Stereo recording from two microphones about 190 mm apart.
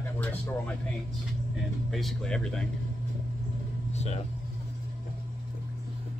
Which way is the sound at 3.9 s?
35° left (ahead or behind).